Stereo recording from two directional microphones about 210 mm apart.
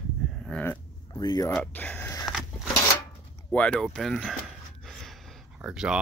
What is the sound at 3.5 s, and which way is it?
Speech, 5° left (ahead or behind).